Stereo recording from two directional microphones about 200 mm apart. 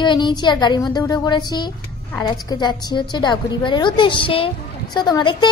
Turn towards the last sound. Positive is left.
turn(degrees=20)  # may be behind; listen again after turning